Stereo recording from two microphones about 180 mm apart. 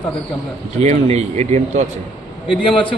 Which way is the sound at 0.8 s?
40° right (ahead or behind).